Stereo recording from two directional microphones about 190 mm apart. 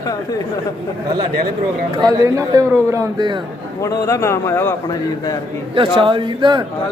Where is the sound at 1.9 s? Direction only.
20° right (ahead or behind).